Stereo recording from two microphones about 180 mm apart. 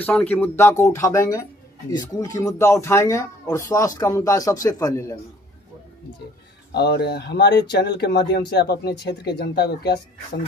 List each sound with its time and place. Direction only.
0.0 s speech: 10° left (ahead or behind)
6.7 s speech: 65° left (ahead or behind)